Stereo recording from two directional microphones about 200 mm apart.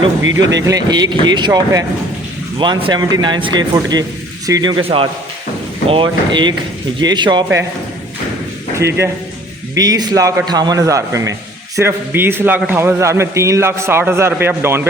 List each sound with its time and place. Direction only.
0.2 s speech: 70° right (ahead or behind)
0.6 s speech: 20° right (ahead or behind)
5.9 s speech: 25° right (ahead or behind)
8.7 s a man's voice: 15° right (ahead or behind)